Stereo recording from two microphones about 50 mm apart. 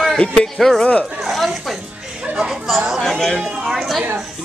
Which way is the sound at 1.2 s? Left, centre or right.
Centre.